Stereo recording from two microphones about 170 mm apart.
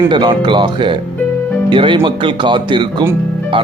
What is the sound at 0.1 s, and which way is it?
Speech, 25° right (ahead or behind).